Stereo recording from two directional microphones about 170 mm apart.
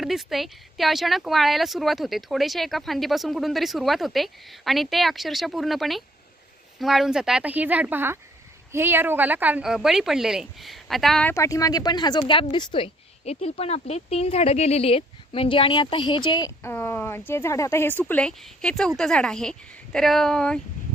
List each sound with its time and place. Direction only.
0.0 s speech: centre (ahead or behind)
11.3 s speech: 20° left (ahead or behind)
16.7 s speech: 10° left (ahead or behind)